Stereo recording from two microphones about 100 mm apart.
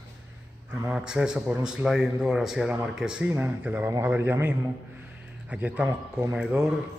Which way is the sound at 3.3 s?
20° right (ahead or behind).